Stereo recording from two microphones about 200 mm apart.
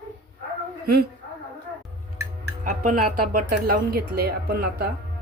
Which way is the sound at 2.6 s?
45° right (ahead or behind).